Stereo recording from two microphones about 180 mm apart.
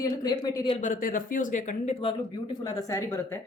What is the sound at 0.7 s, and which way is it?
Speech, 45° left (ahead or behind).